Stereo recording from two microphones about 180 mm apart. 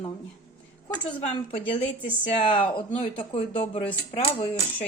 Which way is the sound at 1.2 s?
30° left (ahead or behind).